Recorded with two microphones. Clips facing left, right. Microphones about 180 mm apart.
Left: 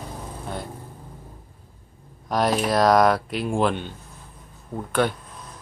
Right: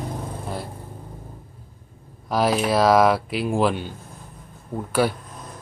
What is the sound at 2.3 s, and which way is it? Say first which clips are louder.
Speech: right 1 dB; 5° right (ahead or behind).